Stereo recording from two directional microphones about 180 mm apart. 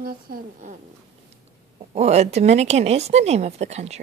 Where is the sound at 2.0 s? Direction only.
35° right (ahead or behind).